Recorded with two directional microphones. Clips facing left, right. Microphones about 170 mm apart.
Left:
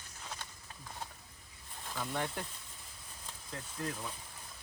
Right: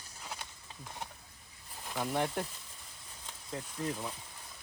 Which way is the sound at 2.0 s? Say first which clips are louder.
Right 5 dB; 5° right (ahead or behind).